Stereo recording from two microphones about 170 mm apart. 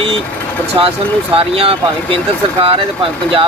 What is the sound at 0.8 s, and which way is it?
Speech, 30° right (ahead or behind).